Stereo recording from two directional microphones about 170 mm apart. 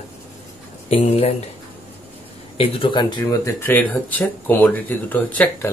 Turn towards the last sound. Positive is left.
turn(degrees=10)  # may be behind; listen again after turning